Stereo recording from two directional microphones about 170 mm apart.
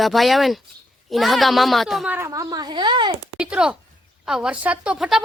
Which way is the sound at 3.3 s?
5° right (ahead or behind).